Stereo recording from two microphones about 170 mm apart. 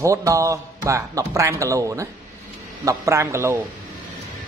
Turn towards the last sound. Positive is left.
turn(degrees=-15)  # may be behind; listen again after turning